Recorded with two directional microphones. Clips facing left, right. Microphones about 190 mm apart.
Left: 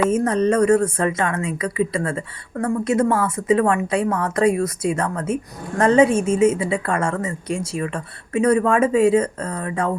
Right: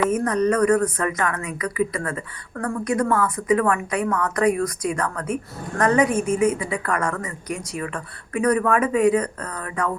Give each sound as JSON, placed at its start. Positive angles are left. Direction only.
{"t": 0.0, "sound": "speech", "side_deg": 25}